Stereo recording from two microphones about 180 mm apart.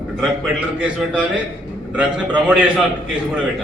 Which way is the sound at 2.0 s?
5° right (ahead or behind).